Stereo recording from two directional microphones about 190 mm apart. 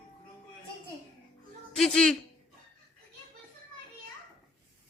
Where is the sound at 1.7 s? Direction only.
Centre (ahead or behind).